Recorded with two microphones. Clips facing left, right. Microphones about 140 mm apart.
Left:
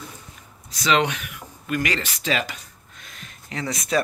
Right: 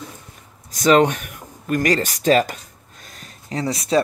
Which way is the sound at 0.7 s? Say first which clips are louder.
Right 7 dB; 45° right (ahead or behind).